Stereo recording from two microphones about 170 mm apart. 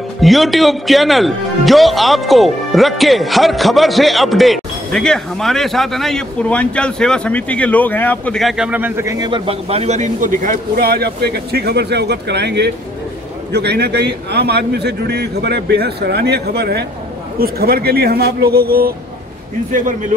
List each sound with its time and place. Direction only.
0.2 s a man's voice: centre (ahead or behind); by 18.9 s 60° right (ahead or behind)
19.7 s speech: 50° right (ahead or behind)